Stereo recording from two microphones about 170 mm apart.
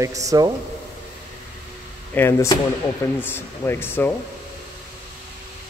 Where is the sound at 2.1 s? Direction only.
15° left (ahead or behind).